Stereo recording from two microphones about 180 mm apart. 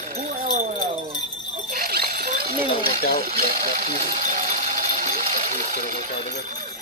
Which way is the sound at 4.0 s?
45° right (ahead or behind).